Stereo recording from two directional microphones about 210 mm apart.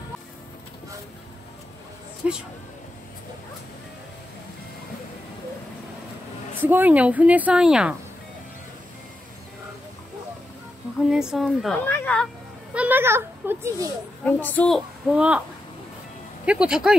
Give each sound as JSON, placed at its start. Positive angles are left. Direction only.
{"t": 2.2, "sound": "a woman's voice", "side_deg": -5}
{"t": 6.6, "sound": "speech", "side_deg": -10}
{"t": 11.1, "sound": "a woman's voice", "side_deg": -5}
{"t": 12.7, "sound": "a child's voice", "side_deg": -10}
{"t": 14.2, "sound": "a woman's voice", "side_deg": 10}
{"t": 16.4, "sound": "a woman's voice", "side_deg": -5}